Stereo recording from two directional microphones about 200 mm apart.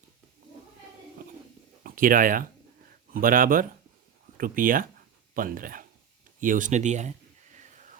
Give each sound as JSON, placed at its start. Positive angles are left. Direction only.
{"t": 1.8, "sound": "speech", "side_deg": -45}